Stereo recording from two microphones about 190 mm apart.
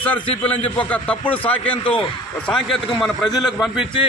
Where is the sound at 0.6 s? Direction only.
30° left (ahead or behind).